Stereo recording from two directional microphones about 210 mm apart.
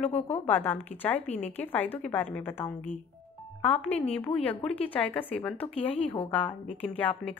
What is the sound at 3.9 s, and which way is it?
Speech, 30° left (ahead or behind).